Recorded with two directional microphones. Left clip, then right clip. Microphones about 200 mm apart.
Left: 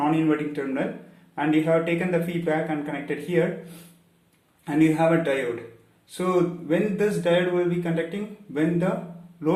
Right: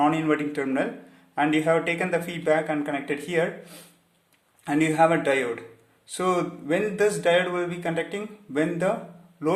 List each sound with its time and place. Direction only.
0.0 s speech: 55° right (ahead or behind)
4.6 s speech: 50° right (ahead or behind)